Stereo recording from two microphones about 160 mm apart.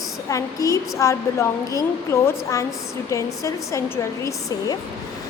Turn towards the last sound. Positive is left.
turn(degrees=20)  # may be behind; listen again after turning